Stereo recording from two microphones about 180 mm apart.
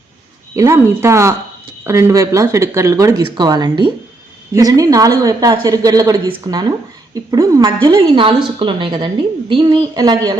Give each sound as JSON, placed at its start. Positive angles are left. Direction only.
{"t": 0.5, "sound": "a woman's voice", "side_deg": -15}